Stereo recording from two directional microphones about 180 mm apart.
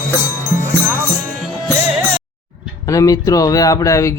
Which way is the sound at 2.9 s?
20° left (ahead or behind).